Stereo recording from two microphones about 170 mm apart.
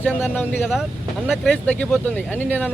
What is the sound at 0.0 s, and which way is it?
Speech, 10° left (ahead or behind).